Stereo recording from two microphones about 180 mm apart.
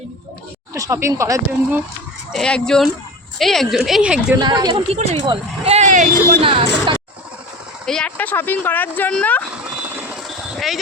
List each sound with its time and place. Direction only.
0.7 s speech: 15° right (ahead or behind)
2.3 s a woman's voice: 5° left (ahead or behind)
4.4 s speech: 25° right (ahead or behind); by 6.1 s 45° right (ahead or behind)
6.4 s speech: 30° right (ahead or behind)
7.9 s speech: 5° left (ahead or behind)
10.1 s vehicle: centre (ahead or behind)